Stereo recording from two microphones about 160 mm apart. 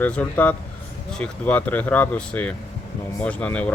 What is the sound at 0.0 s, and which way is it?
Speech, 10° left (ahead or behind).